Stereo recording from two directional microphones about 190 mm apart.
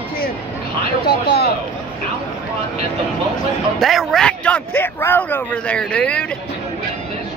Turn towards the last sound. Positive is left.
turn(degrees=5)  # may be behind; listen again after turning